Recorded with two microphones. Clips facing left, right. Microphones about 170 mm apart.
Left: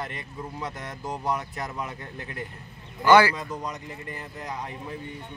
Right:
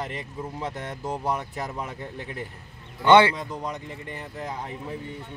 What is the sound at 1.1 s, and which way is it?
Speech, 10° right (ahead or behind).